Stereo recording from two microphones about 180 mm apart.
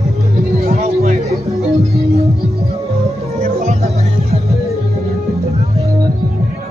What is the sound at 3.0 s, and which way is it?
Music, 35° right (ahead or behind).